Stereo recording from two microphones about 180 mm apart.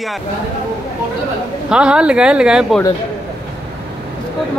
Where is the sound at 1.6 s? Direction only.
5° right (ahead or behind).